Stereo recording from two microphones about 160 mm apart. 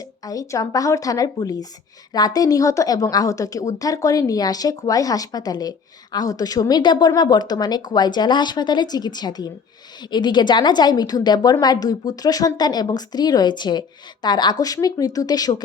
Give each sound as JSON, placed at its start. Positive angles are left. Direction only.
{"t": 0.3, "sound": "a woman's voice", "side_deg": 20}